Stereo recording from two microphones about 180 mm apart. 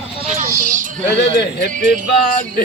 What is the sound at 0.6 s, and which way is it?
Child singing, 45° right (ahead or behind).